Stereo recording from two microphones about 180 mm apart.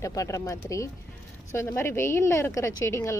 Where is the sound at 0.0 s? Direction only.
15° left (ahead or behind).